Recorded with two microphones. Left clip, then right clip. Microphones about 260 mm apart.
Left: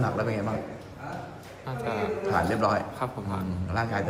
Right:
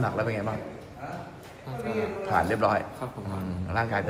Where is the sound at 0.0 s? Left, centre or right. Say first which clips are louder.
Even; centre.